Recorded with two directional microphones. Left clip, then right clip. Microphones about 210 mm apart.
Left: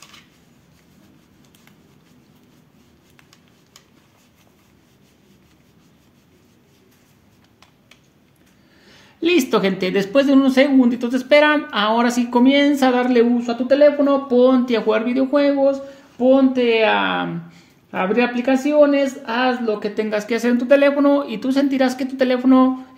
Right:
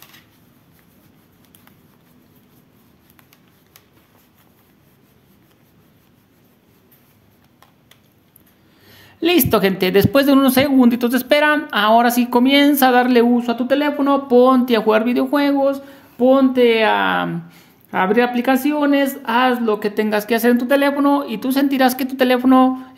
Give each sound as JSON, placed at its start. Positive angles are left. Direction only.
{"t": 8.8, "sound": "speech", "side_deg": -30}